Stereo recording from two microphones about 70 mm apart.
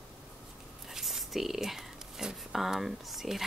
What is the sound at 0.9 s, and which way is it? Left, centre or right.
Whispering, centre.